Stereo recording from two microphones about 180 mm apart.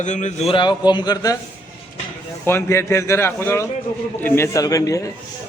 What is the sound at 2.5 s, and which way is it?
A man's voice, 15° left (ahead or behind).